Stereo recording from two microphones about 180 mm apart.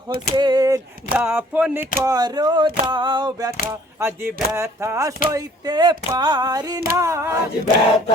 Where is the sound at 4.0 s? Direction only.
10° right (ahead or behind).